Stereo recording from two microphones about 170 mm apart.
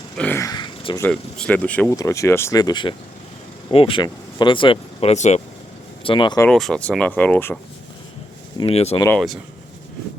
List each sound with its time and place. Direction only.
0.2 s speech: 15° left (ahead or behind)
1.0 s speech: 10° left (ahead or behind); by 5.4 s 40° left (ahead or behind)
6.0 s speech: 30° left (ahead or behind)
6.5 s speech: centre (ahead or behind)
8.5 s speech: 35° left (ahead or behind)
9.0 s speech: centre (ahead or behind)